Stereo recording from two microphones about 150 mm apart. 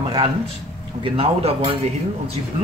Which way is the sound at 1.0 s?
40° right (ahead or behind).